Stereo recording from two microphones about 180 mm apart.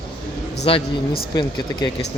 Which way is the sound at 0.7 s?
30° left (ahead or behind).